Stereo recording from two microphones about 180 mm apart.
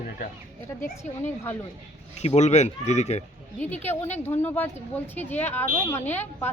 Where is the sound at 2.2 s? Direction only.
40° left (ahead or behind).